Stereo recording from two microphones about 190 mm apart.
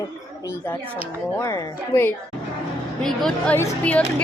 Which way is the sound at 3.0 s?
Centre (ahead or behind).